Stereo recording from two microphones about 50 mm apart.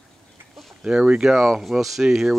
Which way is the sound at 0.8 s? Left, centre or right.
Centre.